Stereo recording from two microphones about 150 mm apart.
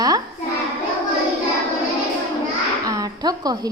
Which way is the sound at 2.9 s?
25° right (ahead or behind).